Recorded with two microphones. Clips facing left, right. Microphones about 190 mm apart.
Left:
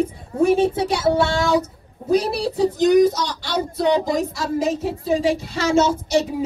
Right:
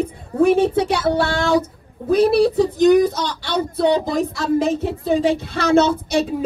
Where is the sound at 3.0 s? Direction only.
60° right (ahead or behind).